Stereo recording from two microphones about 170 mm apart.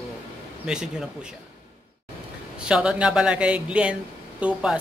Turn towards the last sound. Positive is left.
turn(degrees=-5)  # may be behind; listen again after turning